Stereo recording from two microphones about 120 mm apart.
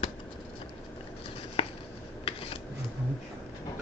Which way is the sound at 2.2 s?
55° left (ahead or behind).